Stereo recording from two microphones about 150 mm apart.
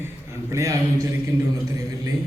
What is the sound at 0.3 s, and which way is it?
A man's voice, 20° right (ahead or behind).